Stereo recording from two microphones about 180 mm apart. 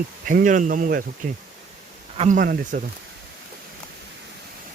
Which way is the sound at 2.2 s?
45° right (ahead or behind).